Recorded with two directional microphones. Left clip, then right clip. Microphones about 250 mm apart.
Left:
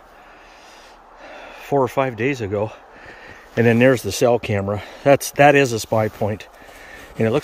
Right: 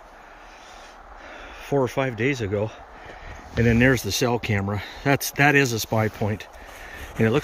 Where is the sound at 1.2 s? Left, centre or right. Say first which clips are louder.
Left 4 dB; centre.